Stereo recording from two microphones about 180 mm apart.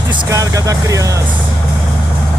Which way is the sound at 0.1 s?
20° right (ahead or behind).